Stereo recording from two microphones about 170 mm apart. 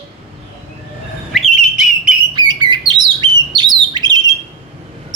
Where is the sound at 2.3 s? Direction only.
25° right (ahead or behind).